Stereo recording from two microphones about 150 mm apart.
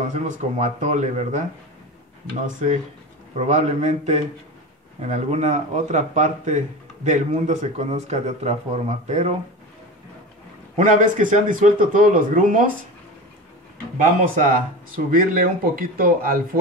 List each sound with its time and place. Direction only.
0.1 s speech: 50° right (ahead or behind)
2.4 s speech: 50° right (ahead or behind)
10.8 s a man's voice: 60° right (ahead or behind)
14.0 s a man's voice: 60° right (ahead or behind)